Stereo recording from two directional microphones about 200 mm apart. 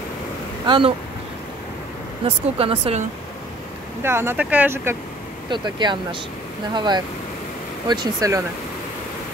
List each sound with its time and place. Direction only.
0.7 s speech: 25° right (ahead or behind)
2.2 s speech: 30° right (ahead or behind)
4.0 s speech: 10° right (ahead or behind)
5.5 s speech: 20° right (ahead or behind)